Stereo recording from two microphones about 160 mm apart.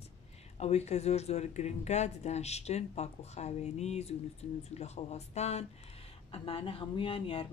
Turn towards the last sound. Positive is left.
turn(degrees=35)  # may be behind; listen again after turning